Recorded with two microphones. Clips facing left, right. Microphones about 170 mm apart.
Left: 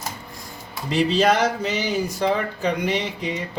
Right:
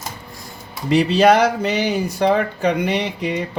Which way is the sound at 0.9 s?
65° right (ahead or behind).